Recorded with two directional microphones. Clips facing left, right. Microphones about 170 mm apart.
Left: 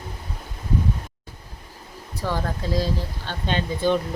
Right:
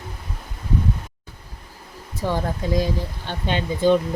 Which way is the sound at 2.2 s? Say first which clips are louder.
Right 3 dB; 15° right (ahead or behind).